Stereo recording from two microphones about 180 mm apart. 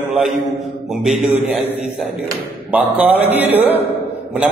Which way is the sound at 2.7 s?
10° right (ahead or behind).